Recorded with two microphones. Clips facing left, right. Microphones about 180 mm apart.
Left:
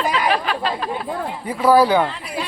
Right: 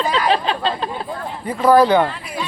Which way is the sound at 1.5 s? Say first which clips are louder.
Right 2 dB; 10° left (ahead or behind).